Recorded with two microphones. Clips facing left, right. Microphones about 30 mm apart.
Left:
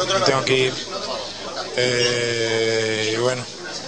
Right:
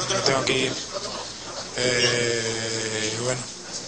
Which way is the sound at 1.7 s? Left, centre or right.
Left.